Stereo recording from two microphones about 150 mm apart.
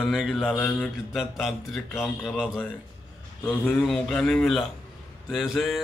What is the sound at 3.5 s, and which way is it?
Speech, 10° left (ahead or behind).